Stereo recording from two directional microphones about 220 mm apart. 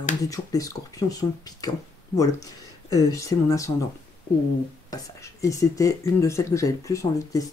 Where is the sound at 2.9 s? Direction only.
15° left (ahead or behind).